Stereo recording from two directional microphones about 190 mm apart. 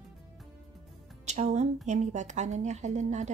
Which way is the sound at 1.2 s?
40° right (ahead or behind).